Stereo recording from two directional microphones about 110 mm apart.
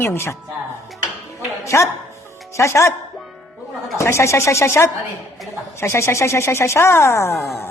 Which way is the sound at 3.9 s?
25° left (ahead or behind).